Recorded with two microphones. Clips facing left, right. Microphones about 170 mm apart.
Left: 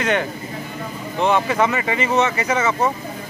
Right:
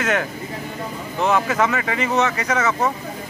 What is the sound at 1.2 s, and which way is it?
Speech, centre (ahead or behind).